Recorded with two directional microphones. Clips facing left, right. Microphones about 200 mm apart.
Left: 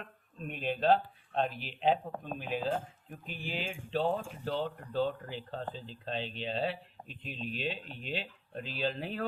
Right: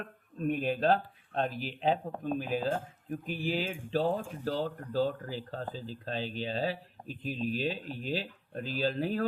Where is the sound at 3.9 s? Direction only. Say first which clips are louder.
Right 2 dB; 40° right (ahead or behind).